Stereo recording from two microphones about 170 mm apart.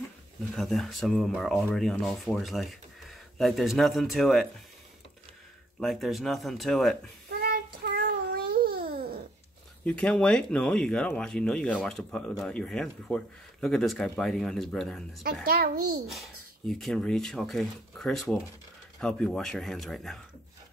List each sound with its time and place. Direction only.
0.6 s speech: centre (ahead or behind)
5.8 s speech: centre (ahead or behind)
7.2 s child singing: 65° right (ahead or behind)
8.5 s babbling: 65° right (ahead or behind)
9.8 s speech: 5° left (ahead or behind)
15.4 s a child's voice: 65° right (ahead or behind)
16.1 s speech: centre (ahead or behind)